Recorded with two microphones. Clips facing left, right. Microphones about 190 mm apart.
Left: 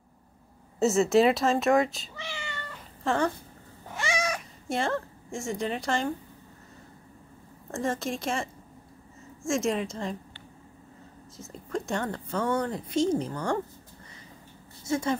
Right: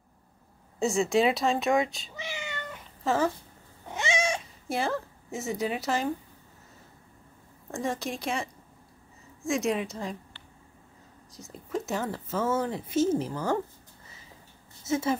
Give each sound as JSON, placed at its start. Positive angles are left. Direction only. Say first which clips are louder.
{"t": 0.7, "sound": "a woman's voice", "louder": "left 3 dB", "side_deg": 0}
{"t": 2.1, "sound": "cat", "louder": "right 5 dB", "side_deg": -15}
{"t": 3.0, "sound": "dog", "louder": "even", "side_deg": 0}
{"t": 3.9, "sound": "cat", "louder": "right 1 dB", "side_deg": -20}
{"t": 4.6, "sound": "a woman's voice", "louder": "left 1 dB", "side_deg": 0}
{"t": 7.7, "sound": "a woman's voice", "louder": "left 2 dB", "side_deg": 0}
{"t": 11.3, "sound": "a woman's voice", "louder": "even", "side_deg": 0}
{"t": 14.9, "sound": "a woman's voice", "louder": "even", "side_deg": -5}